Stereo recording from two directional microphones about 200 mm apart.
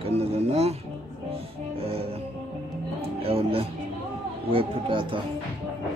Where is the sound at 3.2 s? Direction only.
30° right (ahead or behind).